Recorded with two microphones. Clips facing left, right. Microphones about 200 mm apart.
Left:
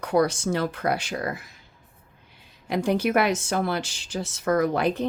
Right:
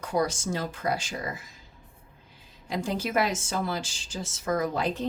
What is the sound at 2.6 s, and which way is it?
Speech, 65° left (ahead or behind).